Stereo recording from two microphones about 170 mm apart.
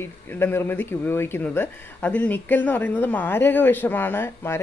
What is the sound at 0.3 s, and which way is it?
A woman's voice, 15° left (ahead or behind).